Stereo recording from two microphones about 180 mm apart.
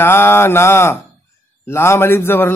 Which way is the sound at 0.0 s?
15° left (ahead or behind).